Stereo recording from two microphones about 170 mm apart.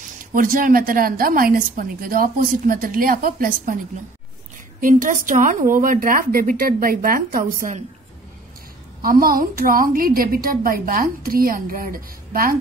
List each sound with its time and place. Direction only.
0.3 s a woman's voice: 55° right (ahead or behind)
4.7 s speech: 50° right (ahead or behind)
9.0 s a woman's voice: 60° right (ahead or behind)